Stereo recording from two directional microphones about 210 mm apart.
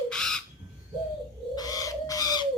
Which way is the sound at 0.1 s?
5° left (ahead or behind).